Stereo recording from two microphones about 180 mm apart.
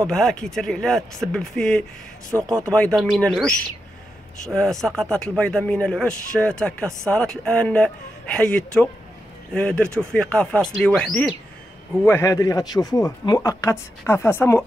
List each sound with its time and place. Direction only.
0.0 s speech: 5° left (ahead or behind)
2.3 s speech: 5° right (ahead or behind)
2.7 s speech: 5° left (ahead or behind)
12.0 s speech: 15° left (ahead or behind)